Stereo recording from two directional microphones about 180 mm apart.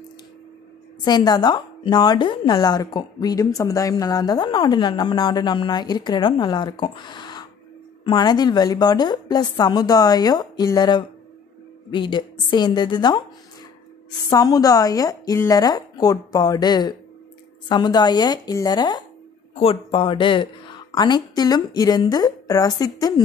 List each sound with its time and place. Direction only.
1.0 s a woman's voice: 20° left (ahead or behind)
14.3 s a woman's voice: 20° left (ahead or behind)